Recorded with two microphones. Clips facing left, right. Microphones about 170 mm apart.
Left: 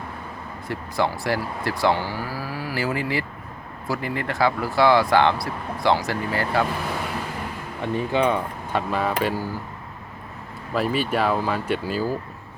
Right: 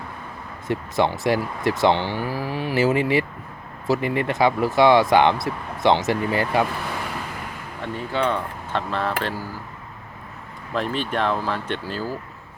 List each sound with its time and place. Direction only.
0.7 s speech: 20° right (ahead or behind)
7.8 s speech: 15° left (ahead or behind)
10.8 s speech: 5° left (ahead or behind)